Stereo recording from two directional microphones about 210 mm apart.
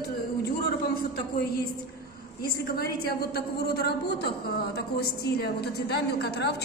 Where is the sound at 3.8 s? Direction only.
50° left (ahead or behind).